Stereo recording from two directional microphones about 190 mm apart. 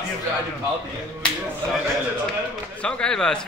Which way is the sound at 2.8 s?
5° left (ahead or behind).